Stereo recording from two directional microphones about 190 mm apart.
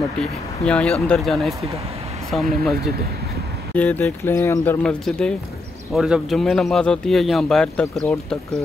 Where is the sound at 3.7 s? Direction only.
10° left (ahead or behind).